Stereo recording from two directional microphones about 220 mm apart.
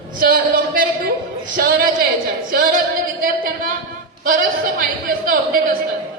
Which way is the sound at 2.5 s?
40° right (ahead or behind).